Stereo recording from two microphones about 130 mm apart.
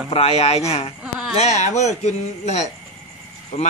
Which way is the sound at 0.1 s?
50° left (ahead or behind).